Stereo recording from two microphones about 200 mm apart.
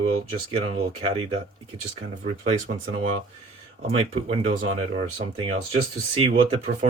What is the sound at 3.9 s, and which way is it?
Speech, 30° right (ahead or behind).